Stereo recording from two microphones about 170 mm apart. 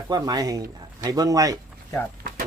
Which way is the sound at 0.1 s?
20° right (ahead or behind).